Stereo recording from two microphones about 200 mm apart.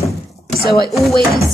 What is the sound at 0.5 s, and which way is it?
Speech, 50° left (ahead or behind).